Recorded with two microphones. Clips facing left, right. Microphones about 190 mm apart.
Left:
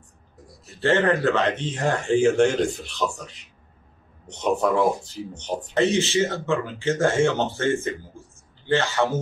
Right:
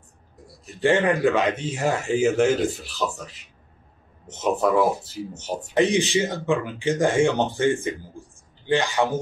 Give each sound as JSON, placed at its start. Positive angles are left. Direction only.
{"t": 0.7, "sound": "speech", "side_deg": -15}